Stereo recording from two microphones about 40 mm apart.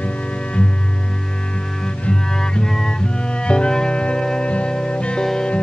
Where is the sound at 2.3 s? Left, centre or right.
Centre.